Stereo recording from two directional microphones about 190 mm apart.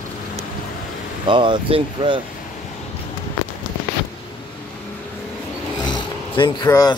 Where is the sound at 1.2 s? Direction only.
25° right (ahead or behind).